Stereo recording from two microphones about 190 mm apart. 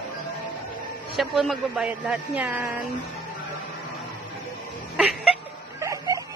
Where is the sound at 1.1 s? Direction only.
Centre (ahead or behind).